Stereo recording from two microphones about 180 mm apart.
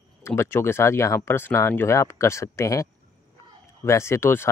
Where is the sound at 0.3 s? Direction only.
10° left (ahead or behind).